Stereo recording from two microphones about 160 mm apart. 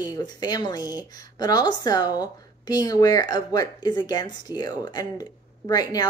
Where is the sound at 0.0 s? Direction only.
25° left (ahead or behind).